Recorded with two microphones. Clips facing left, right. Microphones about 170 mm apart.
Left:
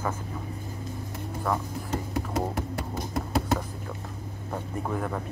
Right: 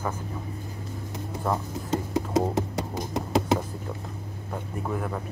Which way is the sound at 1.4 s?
20° right (ahead or behind).